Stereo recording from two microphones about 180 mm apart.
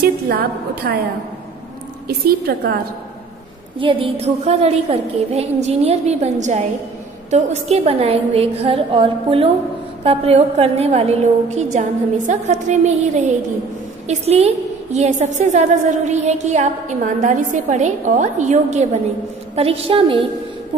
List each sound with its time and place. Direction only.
0.0 s a woman's voice: 60° right (ahead or behind)
2.0 s a woman's voice: 60° right (ahead or behind)
3.8 s a woman's voice: 30° right (ahead or behind)